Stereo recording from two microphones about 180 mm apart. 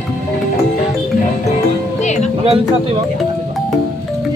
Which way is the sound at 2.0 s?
40° left (ahead or behind).